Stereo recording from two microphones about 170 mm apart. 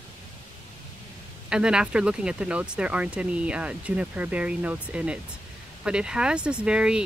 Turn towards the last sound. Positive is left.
turn(degrees=-5)  # may be behind; listen again after turning